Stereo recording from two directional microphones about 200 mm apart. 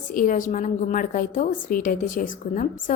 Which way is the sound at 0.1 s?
45° left (ahead or behind).